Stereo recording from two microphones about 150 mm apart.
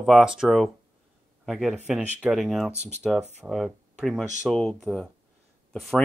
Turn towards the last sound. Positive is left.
turn(degrees=5)  # may be behind; listen again after turning